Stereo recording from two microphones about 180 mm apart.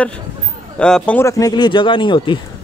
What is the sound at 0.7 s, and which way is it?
Speech, 5° left (ahead or behind).